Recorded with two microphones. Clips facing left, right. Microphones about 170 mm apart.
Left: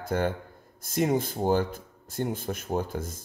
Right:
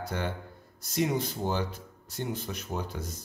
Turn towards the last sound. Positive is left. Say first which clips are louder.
# left 5 dB
turn(degrees=50)  # may be behind; listen again after turning